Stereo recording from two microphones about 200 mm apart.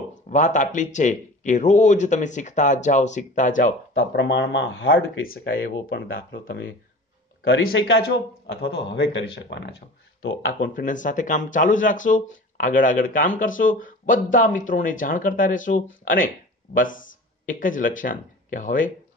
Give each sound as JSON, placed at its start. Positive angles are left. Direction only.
{"t": 0.3, "sound": "speech", "side_deg": 40}
{"t": 5.6, "sound": "speech", "side_deg": 70}
{"t": 6.0, "sound": "speech", "side_deg": 45}
{"t": 7.4, "sound": "speech", "side_deg": 75}
{"t": 8.5, "sound": "speech", "side_deg": 60}
{"t": 10.6, "sound": "speech", "side_deg": 40}